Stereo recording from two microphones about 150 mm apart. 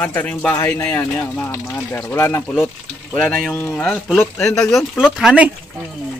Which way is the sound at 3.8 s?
Centre (ahead or behind).